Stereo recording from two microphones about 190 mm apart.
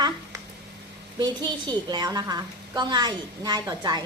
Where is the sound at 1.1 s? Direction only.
20° right (ahead or behind).